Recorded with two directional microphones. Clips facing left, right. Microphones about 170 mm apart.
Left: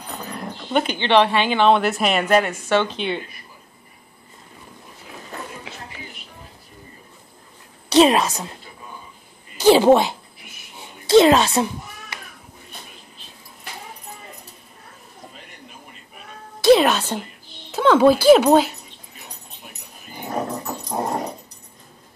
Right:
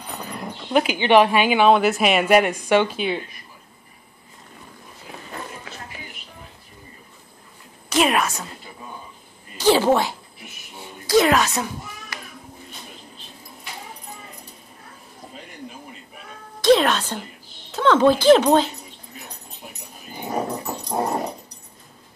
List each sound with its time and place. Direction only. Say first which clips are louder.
0.0 s speech: left 1 dB; centre (ahead or behind)
7.9 s a woman's voice: left 5 dB; 30° left (ahead or behind)
9.6 s a child's voice: left 4 dB; 15° left (ahead or behind)
16.6 s speech: left 2 dB; 10° left (ahead or behind)
20.2 s dog: even; 5° right (ahead or behind)